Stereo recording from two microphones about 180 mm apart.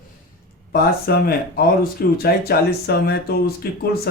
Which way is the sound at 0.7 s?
60° left (ahead or behind).